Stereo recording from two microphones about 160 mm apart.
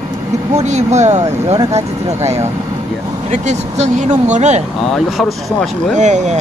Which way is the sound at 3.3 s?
50° right (ahead or behind).